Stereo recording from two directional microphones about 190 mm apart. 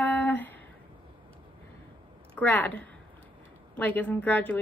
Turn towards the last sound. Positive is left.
turn(degrees=10)  # may be behind; listen again after turning